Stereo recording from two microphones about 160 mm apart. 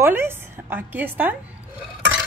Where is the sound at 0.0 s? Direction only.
15° right (ahead or behind).